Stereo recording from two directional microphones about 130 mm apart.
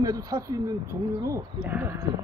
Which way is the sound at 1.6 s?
15° right (ahead or behind).